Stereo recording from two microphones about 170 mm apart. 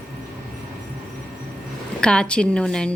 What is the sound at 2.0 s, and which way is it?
Speech, 5° left (ahead or behind).